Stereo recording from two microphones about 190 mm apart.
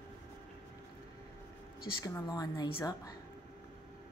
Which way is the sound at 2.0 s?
20° left (ahead or behind).